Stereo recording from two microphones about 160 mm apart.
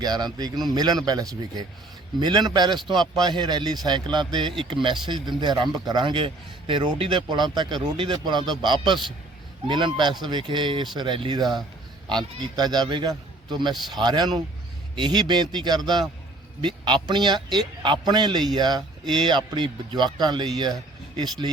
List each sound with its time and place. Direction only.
0.0 s a man's voice: 25° right (ahead or behind)